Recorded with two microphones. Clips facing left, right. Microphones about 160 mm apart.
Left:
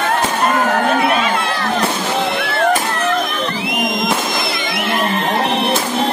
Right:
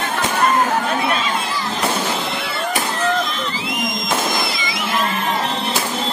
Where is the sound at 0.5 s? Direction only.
65° left (ahead or behind).